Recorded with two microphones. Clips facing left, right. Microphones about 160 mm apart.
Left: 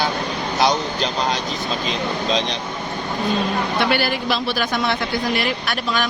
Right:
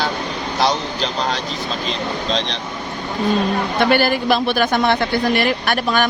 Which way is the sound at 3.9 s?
45° right (ahead or behind).